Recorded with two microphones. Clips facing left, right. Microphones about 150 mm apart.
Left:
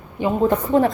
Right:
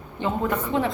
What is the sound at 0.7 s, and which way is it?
Speech, 40° left (ahead or behind).